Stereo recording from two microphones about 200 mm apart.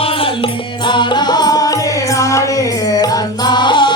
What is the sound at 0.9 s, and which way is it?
Music, 20° left (ahead or behind).